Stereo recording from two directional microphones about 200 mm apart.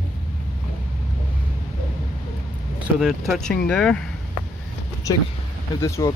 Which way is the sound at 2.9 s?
Centre (ahead or behind).